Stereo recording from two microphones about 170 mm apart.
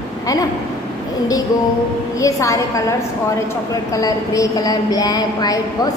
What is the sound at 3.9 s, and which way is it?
A woman's voice, 20° left (ahead or behind).